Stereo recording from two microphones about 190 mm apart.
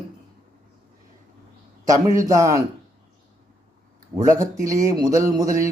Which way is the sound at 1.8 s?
20° right (ahead or behind).